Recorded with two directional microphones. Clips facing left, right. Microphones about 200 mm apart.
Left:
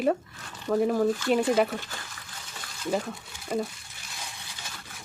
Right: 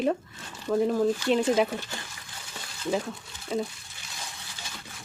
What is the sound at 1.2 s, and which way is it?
Speech, 5° left (ahead or behind).